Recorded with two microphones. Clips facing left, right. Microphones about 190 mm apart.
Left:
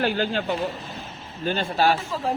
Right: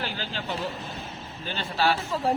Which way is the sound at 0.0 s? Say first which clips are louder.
Left 10 dB; 55° left (ahead or behind).